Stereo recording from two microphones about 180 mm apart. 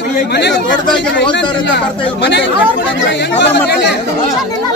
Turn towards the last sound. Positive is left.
turn(degrees=70)  # may be behind; listen again after turning